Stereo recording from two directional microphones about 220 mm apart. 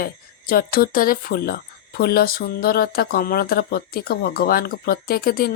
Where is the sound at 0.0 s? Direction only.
40° left (ahead or behind).